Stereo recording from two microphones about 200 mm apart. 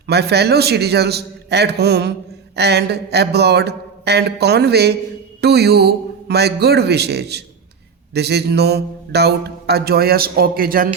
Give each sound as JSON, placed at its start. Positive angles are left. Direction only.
{"t": 0.1, "sound": "speech", "side_deg": -55}